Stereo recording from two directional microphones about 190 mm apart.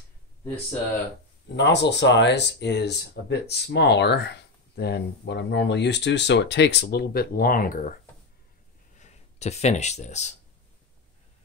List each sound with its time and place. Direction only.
1.6 s speech: 65° left (ahead or behind); by 7.9 s 45° left (ahead or behind)
9.0 s speech: 35° left (ahead or behind)